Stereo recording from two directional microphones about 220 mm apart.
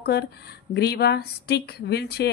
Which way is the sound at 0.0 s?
45° left (ahead or behind).